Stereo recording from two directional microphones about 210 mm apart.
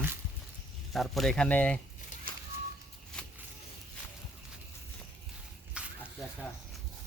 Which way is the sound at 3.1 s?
5° left (ahead or behind).